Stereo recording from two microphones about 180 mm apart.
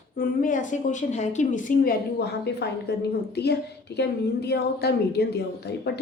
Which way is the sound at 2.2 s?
65° left (ahead or behind).